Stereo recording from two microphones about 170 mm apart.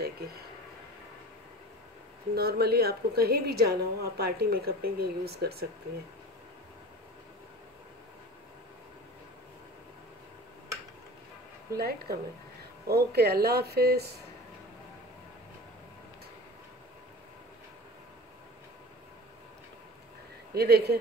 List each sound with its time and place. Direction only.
2.3 s a woman's voice: 65° right (ahead or behind)
11.7 s a woman's voice: 65° right (ahead or behind)
20.5 s a woman's voice: 70° right (ahead or behind)